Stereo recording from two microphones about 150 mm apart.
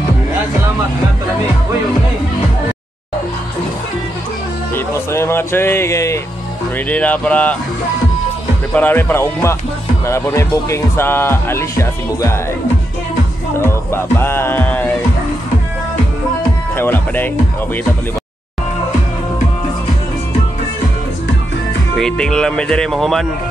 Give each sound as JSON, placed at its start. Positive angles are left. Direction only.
{"t": 4.7, "sound": "music", "side_deg": 15}
{"t": 6.9, "sound": "speech", "side_deg": 10}
{"t": 8.7, "sound": "speech", "side_deg": 15}
{"t": 13.7, "sound": "speech", "side_deg": 15}
{"t": 16.7, "sound": "speech", "side_deg": 15}
{"t": 21.9, "sound": "speech", "side_deg": 5}